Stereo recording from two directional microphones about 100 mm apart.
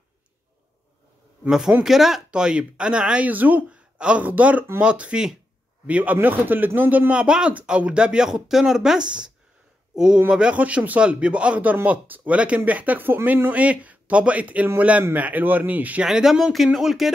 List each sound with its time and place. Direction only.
1.4 s speech: 5° right (ahead or behind)
16.1 s speech: 5° right (ahead or behind)